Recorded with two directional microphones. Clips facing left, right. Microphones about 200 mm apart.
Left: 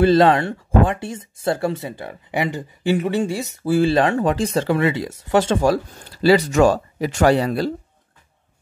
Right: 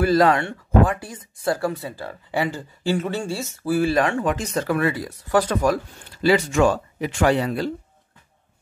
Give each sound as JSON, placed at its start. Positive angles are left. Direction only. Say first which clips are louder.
{"t": 0.0, "sound": "speech", "louder": "left 3 dB", "side_deg": 25}